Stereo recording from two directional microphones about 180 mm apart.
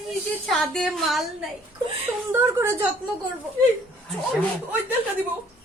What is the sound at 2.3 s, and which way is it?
Speech, 10° right (ahead or behind).